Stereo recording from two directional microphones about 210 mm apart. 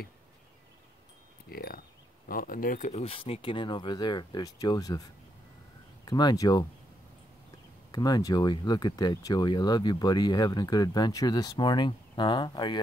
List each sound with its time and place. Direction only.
1.5 s speech: 45° left (ahead or behind); by 5.0 s 15° left (ahead or behind)
6.0 s speech: 20° left (ahead or behind)
7.9 s speech: 20° left (ahead or behind)